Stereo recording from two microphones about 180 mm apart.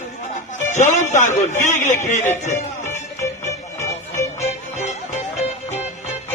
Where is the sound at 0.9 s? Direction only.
40° left (ahead or behind).